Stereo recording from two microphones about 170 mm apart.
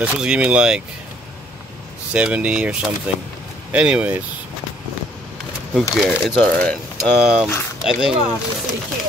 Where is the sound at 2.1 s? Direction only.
10° right (ahead or behind).